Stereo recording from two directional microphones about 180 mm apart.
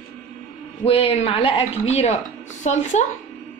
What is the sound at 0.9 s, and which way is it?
A woman's voice, 30° left (ahead or behind).